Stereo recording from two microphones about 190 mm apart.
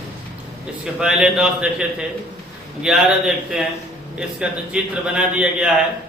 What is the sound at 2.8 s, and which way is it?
A man's voice, 5° right (ahead or behind).